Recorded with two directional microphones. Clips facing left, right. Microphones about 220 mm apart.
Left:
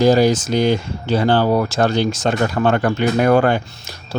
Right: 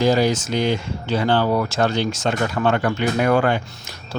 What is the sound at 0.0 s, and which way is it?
Speech, 40° left (ahead or behind).